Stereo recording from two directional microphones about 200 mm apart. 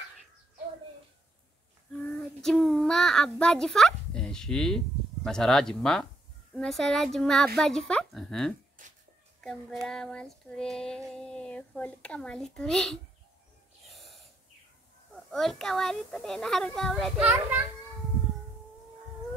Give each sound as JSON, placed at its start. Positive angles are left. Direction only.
{"t": 1.9, "sound": "child singing", "side_deg": 5}
{"t": 6.5, "sound": "speech", "side_deg": 0}
{"t": 8.8, "sound": "a sound", "side_deg": -40}
{"t": 9.4, "sound": "speech", "side_deg": 0}
{"t": 13.8, "sound": "wheeze", "side_deg": 0}
{"t": 15.3, "sound": "speech", "side_deg": 0}
{"t": 17.3, "sound": "a child's voice", "side_deg": -10}